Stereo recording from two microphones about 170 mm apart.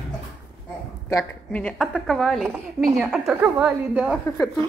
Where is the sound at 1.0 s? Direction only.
10° left (ahead or behind); by 4.2 s 10° right (ahead or behind).